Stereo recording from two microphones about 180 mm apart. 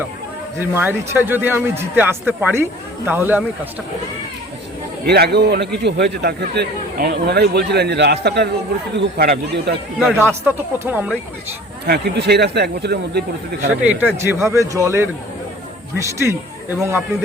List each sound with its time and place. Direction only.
0.6 s speech: 10° right (ahead or behind)
5.0 s a man's voice: 65° right (ahead or behind)
10.0 s speech: 10° right (ahead or behind)
11.9 s speech: 65° right (ahead or behind)
13.8 s speech: 10° right (ahead or behind)